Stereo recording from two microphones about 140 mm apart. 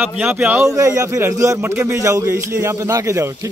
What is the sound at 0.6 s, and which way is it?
A man's voice, 20° right (ahead or behind).